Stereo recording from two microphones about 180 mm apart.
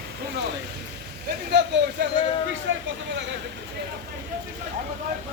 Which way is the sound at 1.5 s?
70° right (ahead or behind).